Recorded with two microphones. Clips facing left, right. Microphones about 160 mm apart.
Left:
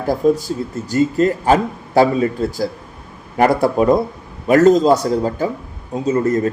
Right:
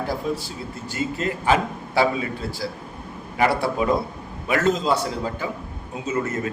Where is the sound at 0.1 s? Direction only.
45° left (ahead or behind).